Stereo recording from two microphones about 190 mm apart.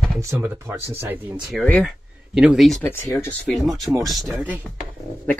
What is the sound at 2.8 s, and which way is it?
Speech, 10° left (ahead or behind).